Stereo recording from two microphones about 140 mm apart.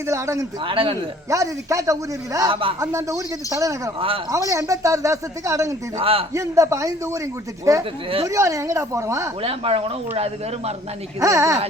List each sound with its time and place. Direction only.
0.1 s speech: 20° right (ahead or behind)
0.6 s speech: 40° right (ahead or behind)
1.3 s speech: 25° right (ahead or behind)
2.5 s speech: 40° right (ahead or behind)
2.8 s speech: 20° right (ahead or behind)
6.0 s speech: 40° right (ahead or behind)
6.3 s speech: 20° right (ahead or behind)
9.4 s speech: 45° right (ahead or behind)
11.2 s speech: 20° right (ahead or behind)